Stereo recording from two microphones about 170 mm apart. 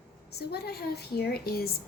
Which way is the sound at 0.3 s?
70° left (ahead or behind).